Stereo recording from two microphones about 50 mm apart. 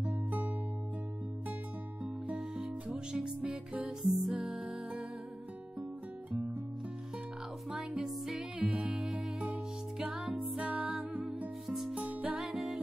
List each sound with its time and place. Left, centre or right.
2.3 s music: centre
4.0 s music: centre
4.4 s music: right
7.7 s music: centre
8.5 s music: right
9.4 s music: centre
11.2 s music: centre
11.9 s music: right
12.4 s music: centre